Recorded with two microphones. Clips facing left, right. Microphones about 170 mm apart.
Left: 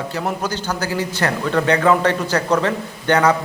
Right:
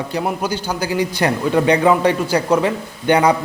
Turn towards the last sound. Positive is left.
turn(degrees=-10)  # may be behind; listen again after turning